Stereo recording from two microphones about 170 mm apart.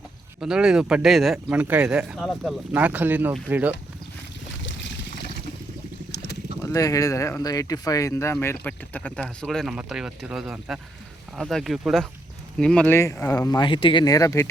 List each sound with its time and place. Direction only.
0.3 s speech: 5° right (ahead or behind)
6.6 s speech: 20° left (ahead or behind)